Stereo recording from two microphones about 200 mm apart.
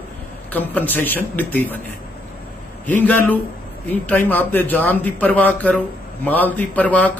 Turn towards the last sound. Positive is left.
turn(degrees=5)  # may be behind; listen again after turning